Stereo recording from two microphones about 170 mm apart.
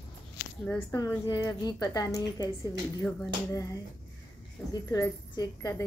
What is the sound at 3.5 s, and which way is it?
Speech, 20° left (ahead or behind).